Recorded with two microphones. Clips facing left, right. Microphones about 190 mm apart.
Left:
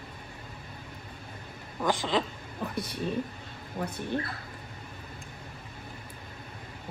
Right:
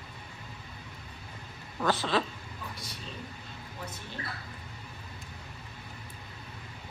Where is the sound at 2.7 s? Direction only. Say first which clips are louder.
Left 12 dB; 60° left (ahead or behind).